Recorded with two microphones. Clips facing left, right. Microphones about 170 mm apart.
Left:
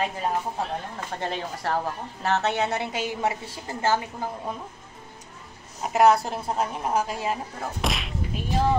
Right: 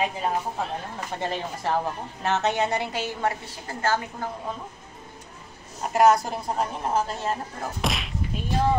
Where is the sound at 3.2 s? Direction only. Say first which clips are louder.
Even; 20° left (ahead or behind).